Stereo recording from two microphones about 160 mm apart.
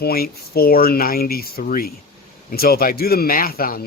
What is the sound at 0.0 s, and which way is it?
Speech, 75° left (ahead or behind).